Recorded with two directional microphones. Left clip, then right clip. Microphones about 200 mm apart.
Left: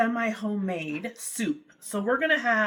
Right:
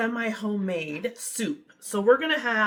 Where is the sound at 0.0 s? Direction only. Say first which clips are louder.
Left 2 dB; 15° right (ahead or behind).